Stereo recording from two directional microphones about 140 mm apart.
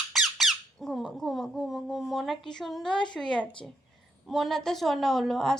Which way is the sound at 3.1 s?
5° left (ahead or behind).